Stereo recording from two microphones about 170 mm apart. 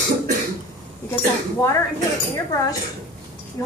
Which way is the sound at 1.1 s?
15° left (ahead or behind).